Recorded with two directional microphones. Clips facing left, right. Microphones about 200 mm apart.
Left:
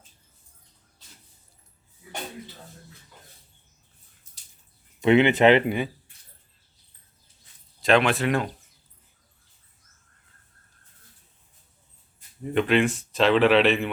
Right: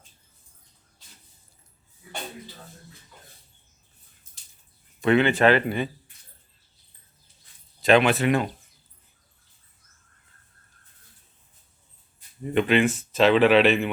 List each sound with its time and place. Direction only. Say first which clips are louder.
4.9 s speech: left 2 dB; 20° left (ahead or behind)
7.8 s a man's voice: right 2 dB; centre (ahead or behind)
12.5 s a man's voice: right 1 dB; centre (ahead or behind)